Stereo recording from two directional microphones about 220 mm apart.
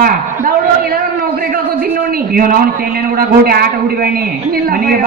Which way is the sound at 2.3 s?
40° right (ahead or behind).